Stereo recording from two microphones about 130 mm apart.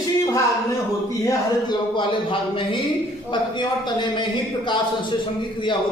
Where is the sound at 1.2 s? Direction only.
25° left (ahead or behind).